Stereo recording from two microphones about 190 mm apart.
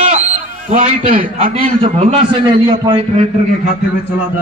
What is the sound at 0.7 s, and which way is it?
Speech, 45° right (ahead or behind).